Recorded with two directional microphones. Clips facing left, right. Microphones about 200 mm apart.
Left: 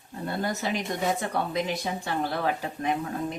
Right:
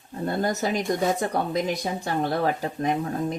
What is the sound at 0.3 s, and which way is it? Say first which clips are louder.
Speech: right 4 dB; 45° right (ahead or behind).